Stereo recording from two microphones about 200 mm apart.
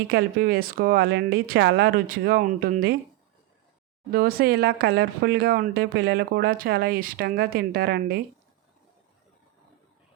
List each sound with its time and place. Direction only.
0.1 s speech: 50° right (ahead or behind)
4.1 s speech: 50° right (ahead or behind)